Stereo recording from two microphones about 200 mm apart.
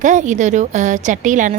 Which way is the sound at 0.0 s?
40° right (ahead or behind).